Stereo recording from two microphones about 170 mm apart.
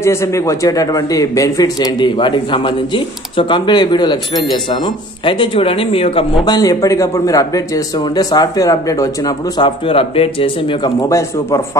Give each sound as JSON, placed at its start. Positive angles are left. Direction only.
{"t": 0.0, "sound": "speech", "side_deg": 15}